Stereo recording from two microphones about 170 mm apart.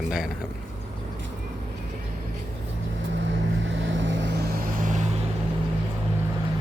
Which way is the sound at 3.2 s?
90° right.